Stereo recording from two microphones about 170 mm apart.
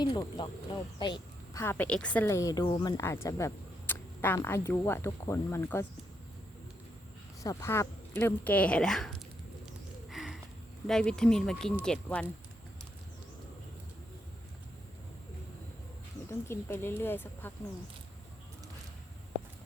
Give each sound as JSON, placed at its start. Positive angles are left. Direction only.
{"t": 0.0, "sound": "speech", "side_deg": 25}
{"t": 1.6, "sound": "speech", "side_deg": 10}
{"t": 7.4, "sound": "speech", "side_deg": 15}
{"t": 8.5, "sound": "speech", "side_deg": 5}
{"t": 10.1, "sound": "a sound", "side_deg": 0}
{"t": 10.8, "sound": "speech", "side_deg": 5}
{"t": 16.3, "sound": "speech", "side_deg": 15}